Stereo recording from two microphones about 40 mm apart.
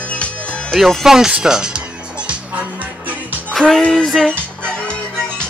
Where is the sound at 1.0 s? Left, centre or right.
Centre.